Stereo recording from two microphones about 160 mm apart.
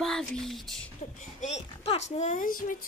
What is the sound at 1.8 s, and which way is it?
Speech, 40° left (ahead or behind).